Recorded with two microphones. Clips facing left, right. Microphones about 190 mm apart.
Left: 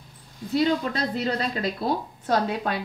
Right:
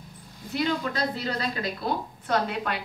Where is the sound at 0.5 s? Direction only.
30° left (ahead or behind).